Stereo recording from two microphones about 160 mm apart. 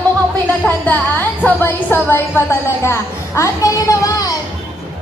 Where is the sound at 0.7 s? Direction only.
10° left (ahead or behind).